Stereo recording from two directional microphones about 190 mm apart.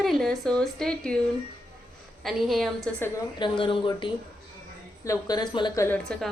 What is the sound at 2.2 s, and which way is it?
Speech, centre (ahead or behind).